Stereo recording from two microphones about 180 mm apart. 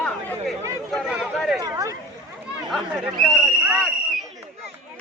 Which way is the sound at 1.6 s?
20° right (ahead or behind).